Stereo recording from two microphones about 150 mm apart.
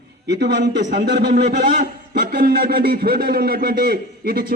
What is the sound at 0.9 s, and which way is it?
A man's voice, 90° right.